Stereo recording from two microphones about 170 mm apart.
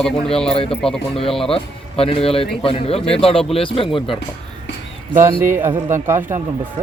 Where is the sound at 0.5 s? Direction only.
35° left (ahead or behind).